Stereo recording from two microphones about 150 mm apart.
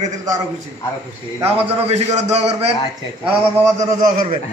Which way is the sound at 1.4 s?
45° right (ahead or behind).